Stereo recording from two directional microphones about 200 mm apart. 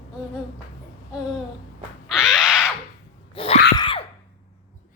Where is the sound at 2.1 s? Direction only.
Centre (ahead or behind).